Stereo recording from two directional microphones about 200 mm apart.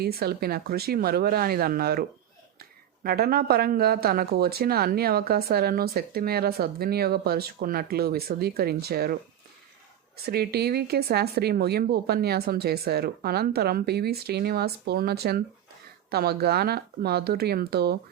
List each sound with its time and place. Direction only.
0.0 s speech: 50° right (ahead or behind)
10.2 s speech: 50° right (ahead or behind)